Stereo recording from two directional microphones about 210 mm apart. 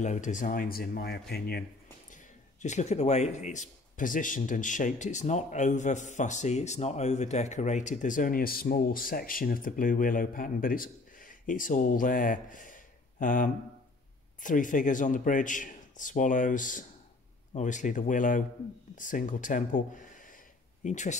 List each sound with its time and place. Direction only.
0.0 s a man's voice: 35° left (ahead or behind)
2.6 s a man's voice: 35° left (ahead or behind)